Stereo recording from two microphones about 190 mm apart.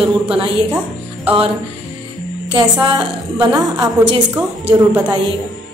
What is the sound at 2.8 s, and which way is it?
A woman's voice, 5° right (ahead or behind).